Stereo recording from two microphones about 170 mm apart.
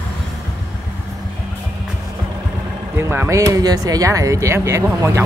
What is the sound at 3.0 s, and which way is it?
Speech, 15° right (ahead or behind).